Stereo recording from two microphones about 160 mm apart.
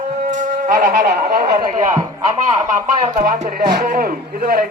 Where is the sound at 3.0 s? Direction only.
60° right (ahead or behind).